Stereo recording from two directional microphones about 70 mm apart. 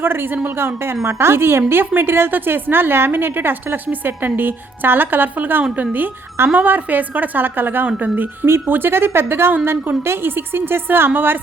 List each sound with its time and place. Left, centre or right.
0.0 s a woman's voice: right